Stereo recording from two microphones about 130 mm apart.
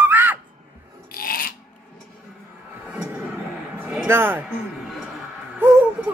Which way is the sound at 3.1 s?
10° right (ahead or behind).